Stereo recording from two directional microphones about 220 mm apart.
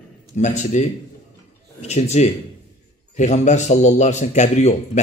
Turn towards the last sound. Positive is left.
turn(degrees=30)  # may be behind; listen again after turning